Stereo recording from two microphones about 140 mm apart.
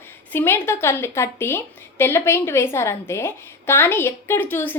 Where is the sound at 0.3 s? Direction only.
15° left (ahead or behind).